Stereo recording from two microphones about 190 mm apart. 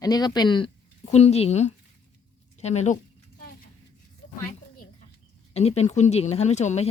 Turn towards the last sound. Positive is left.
turn(degrees=35)  # may be behind; listen again after turning